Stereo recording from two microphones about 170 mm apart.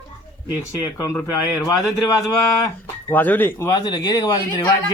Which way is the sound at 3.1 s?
10° left (ahead or behind).